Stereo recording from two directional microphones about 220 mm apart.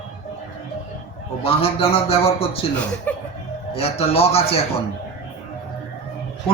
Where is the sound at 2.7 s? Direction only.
5° left (ahead or behind).